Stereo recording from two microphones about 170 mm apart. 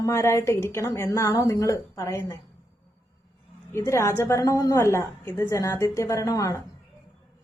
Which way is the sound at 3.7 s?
15° left (ahead or behind).